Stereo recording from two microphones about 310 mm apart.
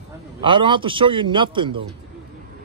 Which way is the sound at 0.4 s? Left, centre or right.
Centre.